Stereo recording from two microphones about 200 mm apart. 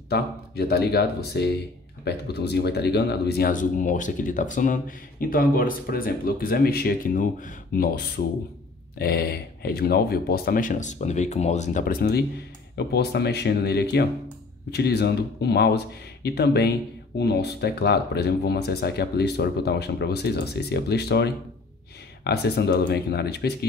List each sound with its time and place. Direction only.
0.1 s speech: 55° left (ahead or behind)